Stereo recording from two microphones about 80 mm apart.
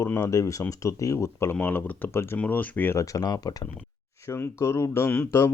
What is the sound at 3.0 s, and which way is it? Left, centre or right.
Speech, left.